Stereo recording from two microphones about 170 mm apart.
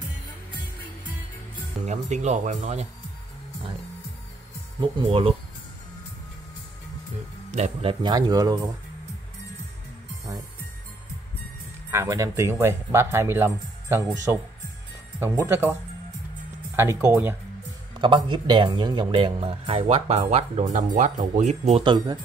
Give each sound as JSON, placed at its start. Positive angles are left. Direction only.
{"t": 1.9, "sound": "speech", "side_deg": -45}
{"t": 4.7, "sound": "speech", "side_deg": -30}
{"t": 7.5, "sound": "speech", "side_deg": -40}
{"t": 8.0, "sound": "speech", "side_deg": -25}
{"t": 11.9, "sound": "speech", "side_deg": -15}
{"t": 18.0, "sound": "speech", "side_deg": -25}